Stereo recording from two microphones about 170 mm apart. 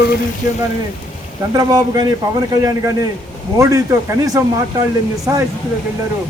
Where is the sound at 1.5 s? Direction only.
25° right (ahead or behind).